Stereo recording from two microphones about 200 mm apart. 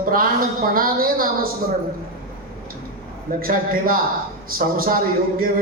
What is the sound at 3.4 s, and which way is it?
A man's voice, 45° right (ahead or behind).